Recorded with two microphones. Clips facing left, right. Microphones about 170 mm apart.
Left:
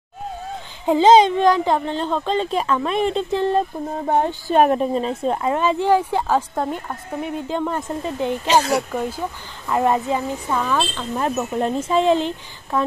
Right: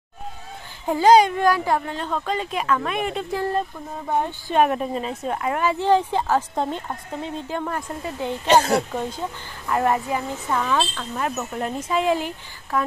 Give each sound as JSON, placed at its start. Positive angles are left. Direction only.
{"t": 0.8, "sound": "a child's voice", "side_deg": 20}
{"t": 4.0, "sound": "speech", "side_deg": 55}
{"t": 4.5, "sound": "a woman's voice", "side_deg": 40}
{"t": 6.5, "sound": "speech", "side_deg": 0}
{"t": 7.2, "sound": "speech", "side_deg": 15}
{"t": 8.5, "sound": "speech", "side_deg": -55}
{"t": 9.7, "sound": "speech", "side_deg": 20}
{"t": 10.6, "sound": "speech", "side_deg": 0}
{"t": 11.3, "sound": "a child's voice", "side_deg": 25}